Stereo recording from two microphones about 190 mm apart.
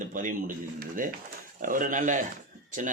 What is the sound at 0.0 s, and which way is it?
Speech, 45° right (ahead or behind).